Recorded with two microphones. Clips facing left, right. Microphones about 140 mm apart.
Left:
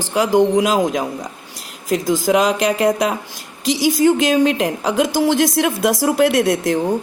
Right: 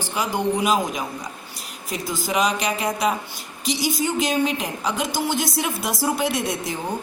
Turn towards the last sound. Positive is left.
turn(degrees=90)